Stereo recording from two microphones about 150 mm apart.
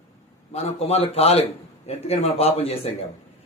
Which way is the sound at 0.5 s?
45° left (ahead or behind).